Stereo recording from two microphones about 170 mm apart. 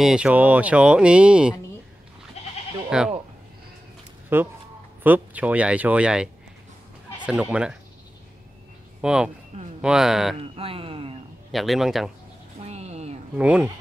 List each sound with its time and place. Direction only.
0.0 s speech: 5° right (ahead or behind)
2.9 s speech: 5° right (ahead or behind)
4.3 s speech: 10° right (ahead or behind)
9.0 s speech: 5° right (ahead or behind)
10.4 s a sound: 35° right (ahead or behind)
11.5 s speech: centre (ahead or behind)
12.6 s a sound: 40° right (ahead or behind)
13.4 s speech: 5° right (ahead or behind)